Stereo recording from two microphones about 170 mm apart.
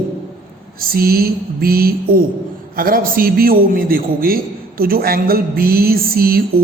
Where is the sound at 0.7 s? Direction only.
60° right (ahead or behind).